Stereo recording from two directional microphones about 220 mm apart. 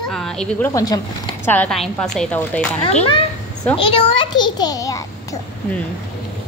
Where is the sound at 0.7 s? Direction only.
15° left (ahead or behind).